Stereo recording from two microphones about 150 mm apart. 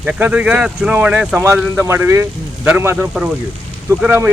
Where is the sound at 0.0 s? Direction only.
10° right (ahead or behind).